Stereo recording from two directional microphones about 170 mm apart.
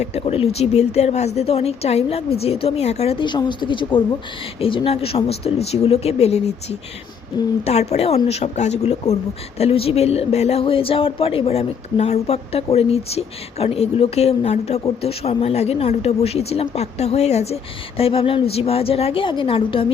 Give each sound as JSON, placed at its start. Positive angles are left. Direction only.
{"t": 0.0, "sound": "speech", "side_deg": 35}